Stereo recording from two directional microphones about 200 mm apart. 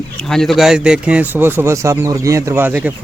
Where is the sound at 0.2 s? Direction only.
Centre (ahead or behind).